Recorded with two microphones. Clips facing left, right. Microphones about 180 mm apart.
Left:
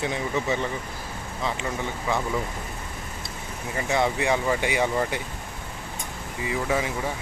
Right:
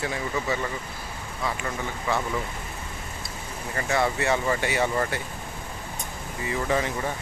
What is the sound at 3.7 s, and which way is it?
Speech, 15° left (ahead or behind).